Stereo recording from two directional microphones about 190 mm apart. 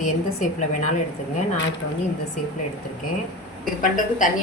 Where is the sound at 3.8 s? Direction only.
45° left (ahead or behind).